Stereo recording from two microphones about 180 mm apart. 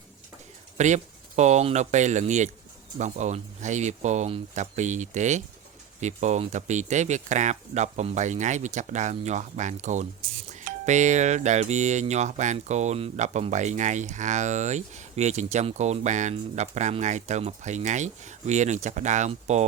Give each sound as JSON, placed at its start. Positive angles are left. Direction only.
{"t": 0.8, "sound": "speech", "side_deg": -40}